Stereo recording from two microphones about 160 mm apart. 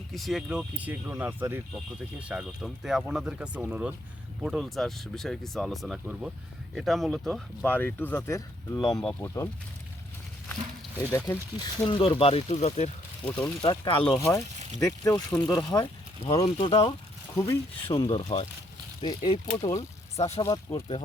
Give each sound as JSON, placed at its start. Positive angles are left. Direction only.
{"t": 0.1, "sound": "speech", "side_deg": 0}
{"t": 9.0, "sound": "speech", "side_deg": 10}
{"t": 10.9, "sound": "speech", "side_deg": 15}
{"t": 13.2, "sound": "speech", "side_deg": 10}
{"t": 13.6, "sound": "speech", "side_deg": 35}
{"t": 14.8, "sound": "speech", "side_deg": 20}
{"t": 17.3, "sound": "speech", "side_deg": 20}
{"t": 17.8, "sound": "speech", "side_deg": 35}
{"t": 19.7, "sound": "speech", "side_deg": 45}